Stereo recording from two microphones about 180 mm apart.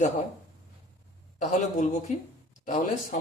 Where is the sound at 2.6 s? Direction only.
45° left (ahead or behind).